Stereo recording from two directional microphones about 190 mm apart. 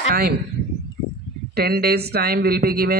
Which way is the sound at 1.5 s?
55° right (ahead or behind).